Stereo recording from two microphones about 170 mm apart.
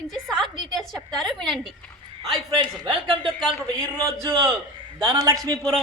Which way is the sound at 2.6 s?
30° right (ahead or behind).